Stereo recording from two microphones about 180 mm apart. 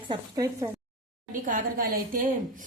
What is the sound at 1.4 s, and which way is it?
Speech, 50° right (ahead or behind).